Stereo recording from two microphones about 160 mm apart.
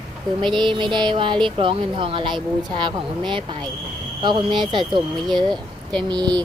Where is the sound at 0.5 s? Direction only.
30° right (ahead or behind).